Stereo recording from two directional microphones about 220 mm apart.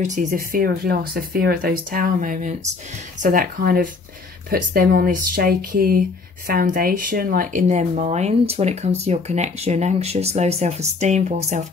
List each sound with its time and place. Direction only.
0.0 s speech: 35° right (ahead or behind)